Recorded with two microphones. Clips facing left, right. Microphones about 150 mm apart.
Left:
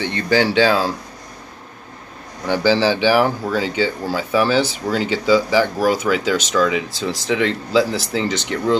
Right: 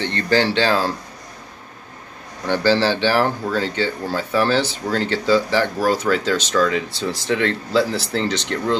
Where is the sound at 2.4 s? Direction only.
10° left (ahead or behind).